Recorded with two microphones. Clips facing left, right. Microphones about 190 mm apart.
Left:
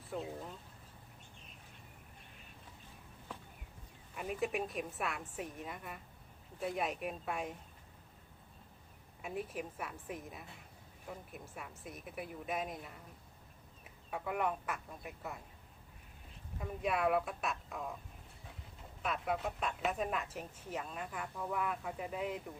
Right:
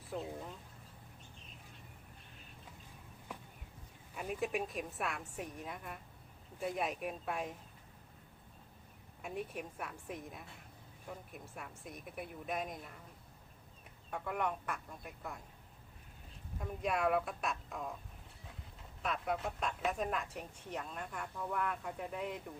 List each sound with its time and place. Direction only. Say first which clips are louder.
0.1 s a woman's voice: even; centre (ahead or behind)
4.1 s a woman's voice: even; centre (ahead or behind)
9.2 s a woman's voice: left 1 dB; centre (ahead or behind)
14.1 s a woman's voice: left 1 dB; 5° left (ahead or behind)
16.6 s a woman's voice: left 1 dB; centre (ahead or behind)
19.0 s a woman's voice: left 1 dB; centre (ahead or behind)